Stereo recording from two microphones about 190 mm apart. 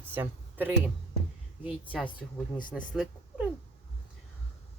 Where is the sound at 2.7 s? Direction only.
Centre (ahead or behind).